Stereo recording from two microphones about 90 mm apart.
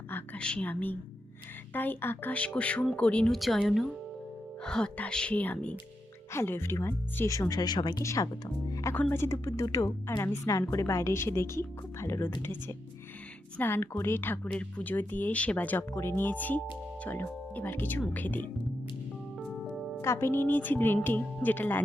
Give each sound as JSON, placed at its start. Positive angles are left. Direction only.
{"t": 0.3, "sound": "speech", "side_deg": 10}
{"t": 3.3, "sound": "a woman's voice", "side_deg": 0}
{"t": 6.3, "sound": "a woman's voice", "side_deg": 25}
{"t": 8.0, "sound": "a woman's voice", "side_deg": 35}
{"t": 14.4, "sound": "speech", "side_deg": 10}
{"t": 19.7, "sound": "music", "side_deg": -5}
{"t": 20.0, "sound": "speech", "side_deg": 30}